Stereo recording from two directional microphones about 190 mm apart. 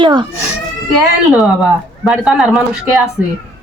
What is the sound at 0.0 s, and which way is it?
Speech, 25° right (ahead or behind).